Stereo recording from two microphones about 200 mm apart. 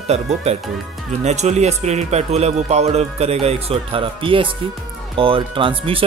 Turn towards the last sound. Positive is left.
turn(degrees=-25)  # may be behind; listen again after turning